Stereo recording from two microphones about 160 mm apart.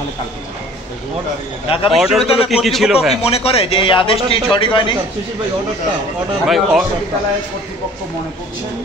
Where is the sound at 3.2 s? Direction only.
40° left (ahead or behind).